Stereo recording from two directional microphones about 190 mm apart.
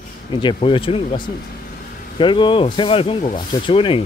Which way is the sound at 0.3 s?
25° left (ahead or behind).